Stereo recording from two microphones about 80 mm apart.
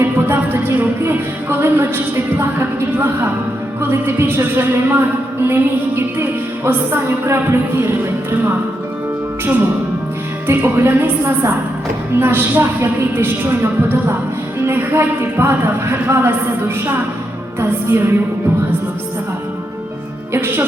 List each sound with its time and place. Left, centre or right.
0.0 s music: right
10.4 s music: right
20.3 s music: right